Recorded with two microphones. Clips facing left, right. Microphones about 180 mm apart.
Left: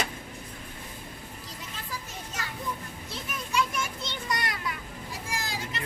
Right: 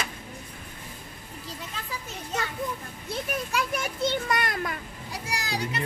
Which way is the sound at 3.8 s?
55° right (ahead or behind).